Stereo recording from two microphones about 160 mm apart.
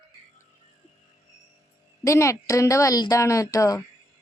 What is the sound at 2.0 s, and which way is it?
A woman's voice, 20° left (ahead or behind).